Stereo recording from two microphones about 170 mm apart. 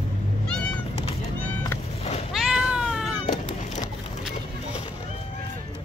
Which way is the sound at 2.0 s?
40° left (ahead or behind).